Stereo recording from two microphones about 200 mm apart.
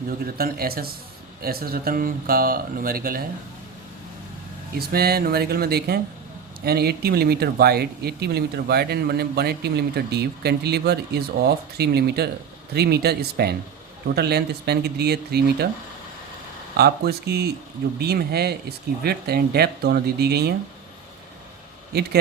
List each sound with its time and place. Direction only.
0.3 s speech: 50° right (ahead or behind)
4.8 s speech: 50° right (ahead or behind)
16.7 s speech: 50° right (ahead or behind)
21.9 s speech: 55° right (ahead or behind)